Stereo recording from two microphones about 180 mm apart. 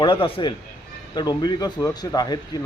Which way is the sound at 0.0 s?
30° left (ahead or behind).